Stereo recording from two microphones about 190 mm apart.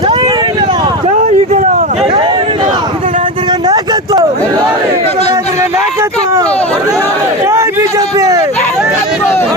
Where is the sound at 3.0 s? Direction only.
35° right (ahead or behind).